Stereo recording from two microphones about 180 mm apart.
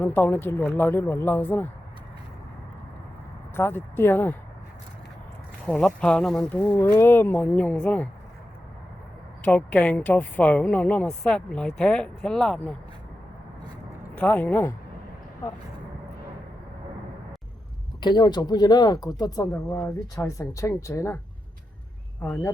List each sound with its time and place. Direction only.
0.0 s speech: 10° left (ahead or behind)
3.5 s speech: 10° left (ahead or behind)
5.6 s speech: 5° left (ahead or behind)
9.4 s speech: 10° left (ahead or behind)
14.2 s speech: 10° left (ahead or behind)
18.0 s speech: 25° left (ahead or behind)
22.2 s speech: 10° left (ahead or behind)